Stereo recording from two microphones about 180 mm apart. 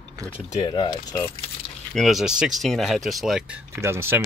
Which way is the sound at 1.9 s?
Centre (ahead or behind).